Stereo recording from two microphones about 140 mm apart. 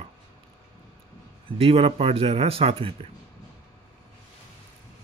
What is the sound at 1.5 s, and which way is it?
Speech, 45° right (ahead or behind).